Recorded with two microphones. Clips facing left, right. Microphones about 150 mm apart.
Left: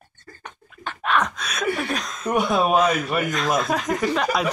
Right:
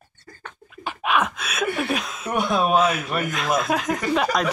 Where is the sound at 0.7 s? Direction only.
10° right (ahead or behind).